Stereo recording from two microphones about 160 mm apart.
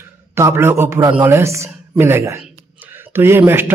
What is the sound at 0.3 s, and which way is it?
Speech, 15° right (ahead or behind).